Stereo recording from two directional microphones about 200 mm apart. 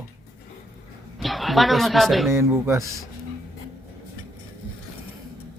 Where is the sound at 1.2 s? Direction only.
Centre (ahead or behind).